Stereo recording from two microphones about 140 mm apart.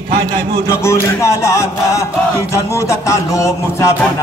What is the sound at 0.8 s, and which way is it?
Speech, 20° left (ahead or behind).